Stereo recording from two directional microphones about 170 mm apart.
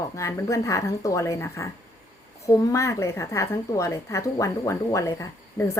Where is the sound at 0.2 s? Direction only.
15° left (ahead or behind).